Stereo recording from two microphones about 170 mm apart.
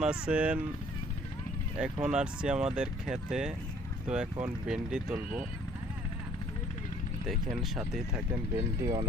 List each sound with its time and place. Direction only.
0.0 s speech: 5° right (ahead or behind)
1.8 s speech: 5° right (ahead or behind)
7.3 s speech: centre (ahead or behind)
8.8 s speech: 20° right (ahead or behind)